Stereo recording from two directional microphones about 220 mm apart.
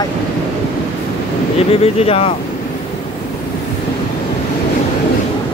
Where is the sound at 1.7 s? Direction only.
25° left (ahead or behind).